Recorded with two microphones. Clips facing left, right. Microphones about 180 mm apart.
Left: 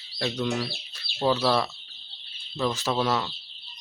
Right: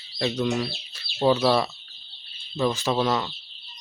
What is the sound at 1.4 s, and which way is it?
Speech, 5° right (ahead or behind).